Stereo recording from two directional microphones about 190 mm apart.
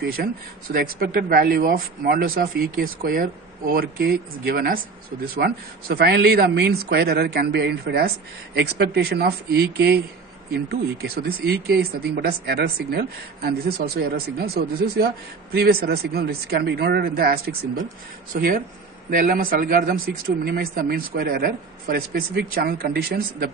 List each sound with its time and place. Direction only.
0.0 s speech: 50° right (ahead or behind)